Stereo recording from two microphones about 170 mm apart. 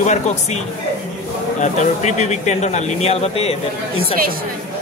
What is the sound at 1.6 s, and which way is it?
A man's voice, 45° left (ahead or behind).